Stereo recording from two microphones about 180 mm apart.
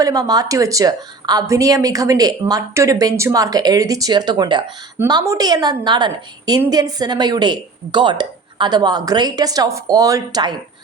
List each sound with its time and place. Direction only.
0.0 s a woman's voice: 20° right (ahead or behind)